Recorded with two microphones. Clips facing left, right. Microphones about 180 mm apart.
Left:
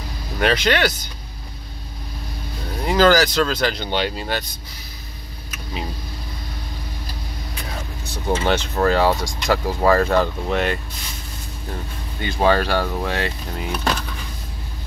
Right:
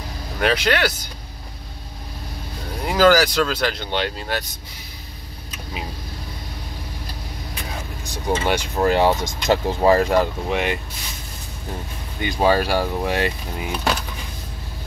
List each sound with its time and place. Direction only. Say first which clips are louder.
0.4 s speech: left 1 dB; 5° right (ahead or behind)
2.8 s speech: even; 5° right (ahead or behind)
8.0 s speech: left 1 dB; 15° right (ahead or behind)
12.2 s speech: even; 15° right (ahead or behind)